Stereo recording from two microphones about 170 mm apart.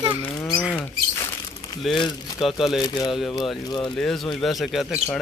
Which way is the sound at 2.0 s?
25° left (ahead or behind).